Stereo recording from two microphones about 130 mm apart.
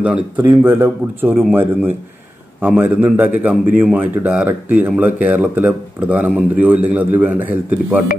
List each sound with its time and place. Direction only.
0.0 s speech: 10° right (ahead or behind)